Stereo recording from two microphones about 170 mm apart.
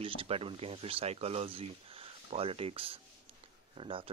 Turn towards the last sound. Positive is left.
turn(degrees=-30)  # may be behind; listen again after turning